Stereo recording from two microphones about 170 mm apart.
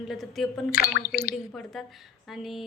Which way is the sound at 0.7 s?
60° left (ahead or behind).